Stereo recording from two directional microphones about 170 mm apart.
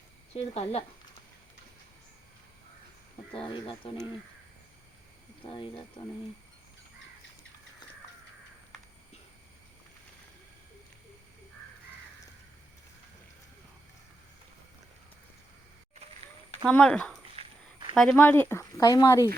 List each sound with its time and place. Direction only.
0.3 s speech: 40° left (ahead or behind)
3.3 s speech: 30° left (ahead or behind)
5.4 s speech: 30° left (ahead or behind)
16.6 s speech: 5° left (ahead or behind)
17.3 s a sound: 30° right (ahead or behind)
17.9 s speech: 5° left (ahead or behind)